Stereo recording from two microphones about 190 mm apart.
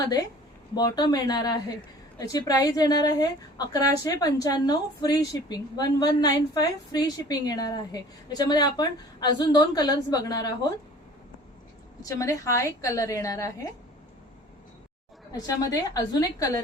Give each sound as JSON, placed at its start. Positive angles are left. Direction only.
{"t": 0.7, "sound": "a woman's voice", "side_deg": 20}
{"t": 12.0, "sound": "a woman's voice", "side_deg": 15}
{"t": 15.3, "sound": "a woman's voice", "side_deg": 20}